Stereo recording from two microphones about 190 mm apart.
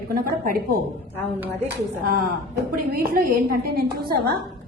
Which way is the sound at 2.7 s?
50° right (ahead or behind).